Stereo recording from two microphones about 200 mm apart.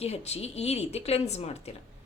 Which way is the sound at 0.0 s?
30° left (ahead or behind).